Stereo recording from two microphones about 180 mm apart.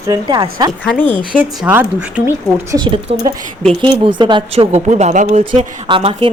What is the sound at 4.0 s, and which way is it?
Speech, 25° right (ahead or behind).